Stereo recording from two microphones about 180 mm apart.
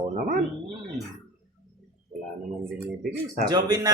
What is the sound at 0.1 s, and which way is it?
Speech, 45° right (ahead or behind).